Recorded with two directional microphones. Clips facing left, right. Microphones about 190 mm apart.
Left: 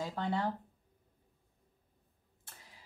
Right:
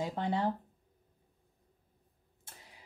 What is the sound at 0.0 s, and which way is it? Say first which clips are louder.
Speech: right 2 dB; 20° right (ahead or behind).